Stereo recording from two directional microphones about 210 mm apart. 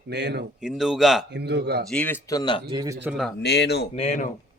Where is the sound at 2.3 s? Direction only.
20° left (ahead or behind).